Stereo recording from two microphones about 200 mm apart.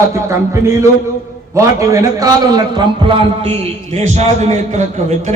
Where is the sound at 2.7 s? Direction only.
25° right (ahead or behind).